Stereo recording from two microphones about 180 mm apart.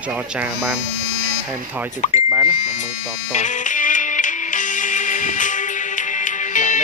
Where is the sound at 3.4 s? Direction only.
45° left (ahead or behind).